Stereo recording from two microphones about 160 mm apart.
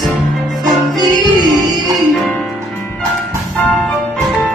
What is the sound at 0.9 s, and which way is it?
Music, 25° right (ahead or behind).